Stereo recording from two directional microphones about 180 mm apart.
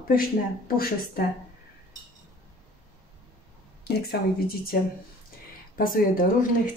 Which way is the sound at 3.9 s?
60° left (ahead or behind).